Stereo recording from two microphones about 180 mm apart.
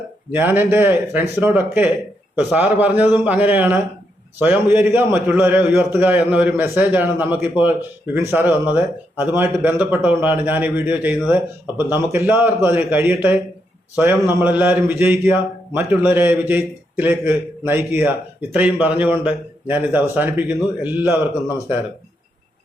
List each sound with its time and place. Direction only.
0.3 s a man's voice: 10° right (ahead or behind)